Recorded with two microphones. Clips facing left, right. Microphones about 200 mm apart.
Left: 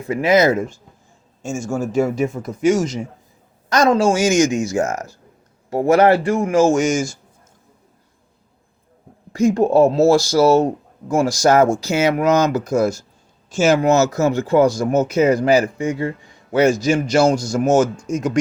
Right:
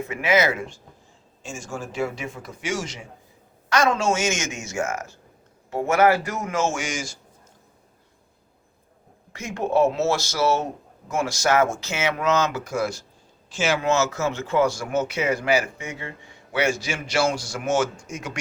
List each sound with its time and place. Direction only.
0.0 s a man's voice: 35° left (ahead or behind)
9.3 s speech: 35° left (ahead or behind)